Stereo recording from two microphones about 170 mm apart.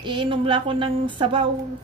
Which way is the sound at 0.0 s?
30° right (ahead or behind).